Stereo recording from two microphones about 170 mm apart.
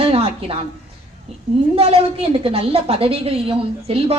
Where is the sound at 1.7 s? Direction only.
35° right (ahead or behind).